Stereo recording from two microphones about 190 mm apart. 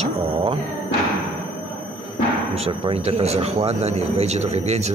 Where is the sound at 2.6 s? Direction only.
30° right (ahead or behind).